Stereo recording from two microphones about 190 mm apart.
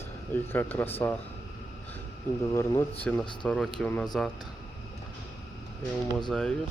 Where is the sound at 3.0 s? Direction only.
5° left (ahead or behind).